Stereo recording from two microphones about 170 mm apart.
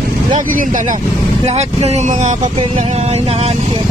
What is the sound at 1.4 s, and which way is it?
Speech, 40° right (ahead or behind).